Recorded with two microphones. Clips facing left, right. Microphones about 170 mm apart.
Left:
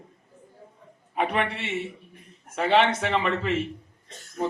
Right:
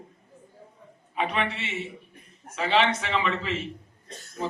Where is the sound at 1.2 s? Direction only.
55° left (ahead or behind).